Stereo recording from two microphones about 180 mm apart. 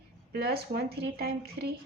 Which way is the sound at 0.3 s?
60° right (ahead or behind).